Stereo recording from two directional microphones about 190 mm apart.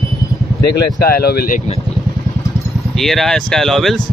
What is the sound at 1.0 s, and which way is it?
Speech, 55° left (ahead or behind).